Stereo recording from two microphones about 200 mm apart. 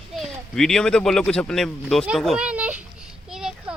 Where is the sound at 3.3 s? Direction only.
5° right (ahead or behind).